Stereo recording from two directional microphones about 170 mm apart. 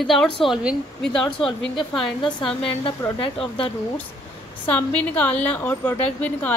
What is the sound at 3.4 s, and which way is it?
A woman's voice, 5° left (ahead or behind).